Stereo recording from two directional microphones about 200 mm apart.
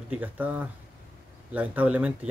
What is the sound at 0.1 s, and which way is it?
Speech, 10° right (ahead or behind).